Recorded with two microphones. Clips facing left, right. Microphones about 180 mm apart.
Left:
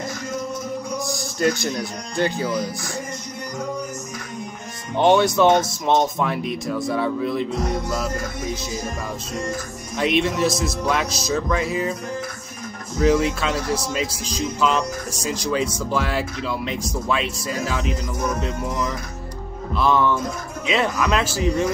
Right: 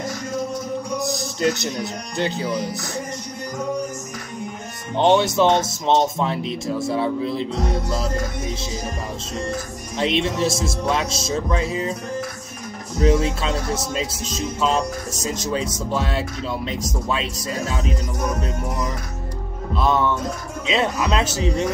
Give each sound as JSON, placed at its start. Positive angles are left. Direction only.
{"t": 0.9, "sound": "speech", "side_deg": -20}
{"t": 4.9, "sound": "speech", "side_deg": -25}
{"t": 9.9, "sound": "speech", "side_deg": -25}
{"t": 13.0, "sound": "speech", "side_deg": -25}
{"t": 19.7, "sound": "speech", "side_deg": -20}